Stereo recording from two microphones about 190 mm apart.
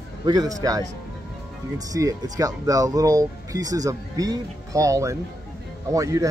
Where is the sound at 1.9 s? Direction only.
20° right (ahead or behind).